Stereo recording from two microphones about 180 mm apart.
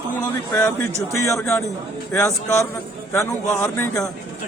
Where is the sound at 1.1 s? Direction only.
15° left (ahead or behind).